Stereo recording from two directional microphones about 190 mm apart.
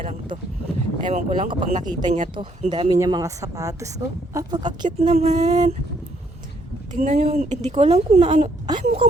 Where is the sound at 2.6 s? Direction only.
25° right (ahead or behind).